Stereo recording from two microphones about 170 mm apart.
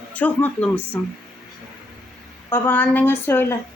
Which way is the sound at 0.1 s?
10° left (ahead or behind).